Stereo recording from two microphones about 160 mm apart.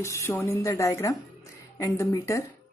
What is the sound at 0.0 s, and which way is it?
A woman's voice, 15° left (ahead or behind).